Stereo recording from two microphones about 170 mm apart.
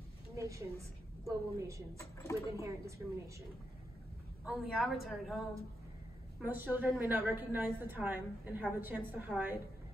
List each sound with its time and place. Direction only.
0.4 s a woman's voice: 20° right (ahead or behind)
2.0 s a woman's voice: 15° left (ahead or behind)
3.0 s a woman's voice: 15° right (ahead or behind)
4.5 s a woman's voice: centre (ahead or behind)
6.4 s a woman's voice: 10° right (ahead or behind)